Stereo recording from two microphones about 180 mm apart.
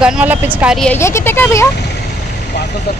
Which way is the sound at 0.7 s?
10° left (ahead or behind).